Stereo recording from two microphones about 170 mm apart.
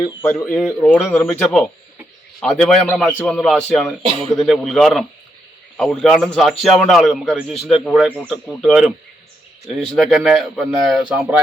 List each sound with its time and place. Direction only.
0.2 s a man's voice: 10° left (ahead or behind); by 11.3 s 5° right (ahead or behind)